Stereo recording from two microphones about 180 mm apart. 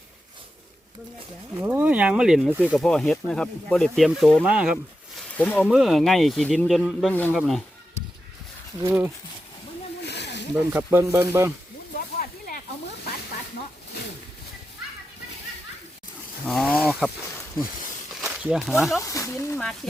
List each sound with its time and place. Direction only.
1.5 s speech: 10° right (ahead or behind)
2.8 s speech: 5° left (ahead or behind)
5.3 s speech: 10° left (ahead or behind)
5.6 s speech: centre (ahead or behind)
7.1 s speech: 10° left (ahead or behind)
8.8 s speech: 10° right (ahead or behind)
10.0 s a sound: 70° left (ahead or behind)
10.7 s speech: 15° right (ahead or behind)
11.9 s snake: 55° left (ahead or behind)
16.5 s speech: 5° left (ahead or behind)
18.2 s speech: 5° right (ahead or behind)
19.0 s speech: 15° left (ahead or behind)